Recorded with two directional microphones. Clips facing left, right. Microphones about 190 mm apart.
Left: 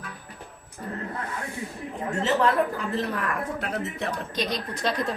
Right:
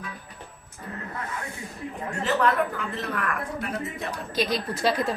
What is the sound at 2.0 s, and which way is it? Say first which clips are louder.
Speech: left 1 dB; 25° left (ahead or behind).